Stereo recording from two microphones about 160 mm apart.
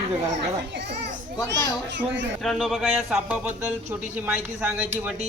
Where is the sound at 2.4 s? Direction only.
Centre (ahead or behind).